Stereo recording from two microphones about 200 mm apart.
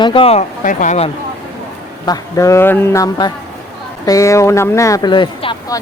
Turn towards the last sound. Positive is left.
turn(degrees=20)  # may be behind; listen again after turning